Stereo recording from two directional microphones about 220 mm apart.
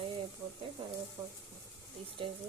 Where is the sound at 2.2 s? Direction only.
25° right (ahead or behind).